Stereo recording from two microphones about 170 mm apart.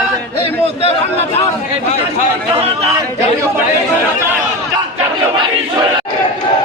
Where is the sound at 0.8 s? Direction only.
35° left (ahead or behind).